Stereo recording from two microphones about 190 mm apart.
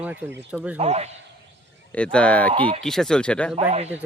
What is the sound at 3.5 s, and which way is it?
Speech, 35° right (ahead or behind).